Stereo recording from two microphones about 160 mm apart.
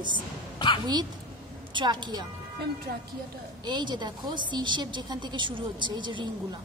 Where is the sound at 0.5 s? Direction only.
30° left (ahead or behind).